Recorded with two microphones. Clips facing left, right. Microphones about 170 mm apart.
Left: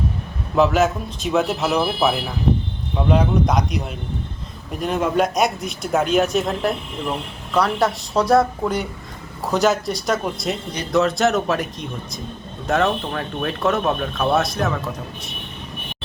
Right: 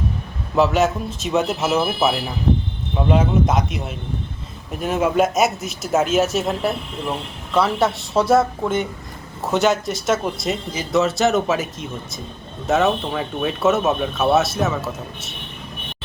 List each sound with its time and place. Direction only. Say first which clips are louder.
0.5 s speech: even; centre (ahead or behind)